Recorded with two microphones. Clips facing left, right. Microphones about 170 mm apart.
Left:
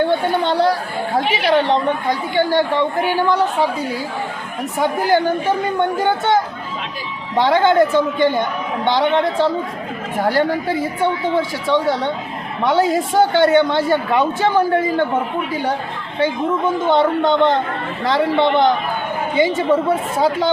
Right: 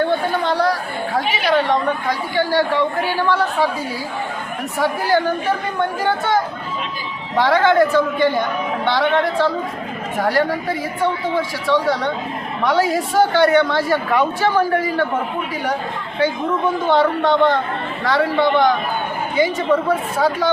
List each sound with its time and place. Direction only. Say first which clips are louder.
0.4 s chatter: left 2 dB; 25° left (ahead or behind)
1.5 s speech: left 1 dB; 25° left (ahead or behind)
4.8 s speech: left 2 dB; 20° left (ahead or behind)
11.3 s speech: left 1 dB; 20° left (ahead or behind)
16.9 s speech: even; 20° left (ahead or behind)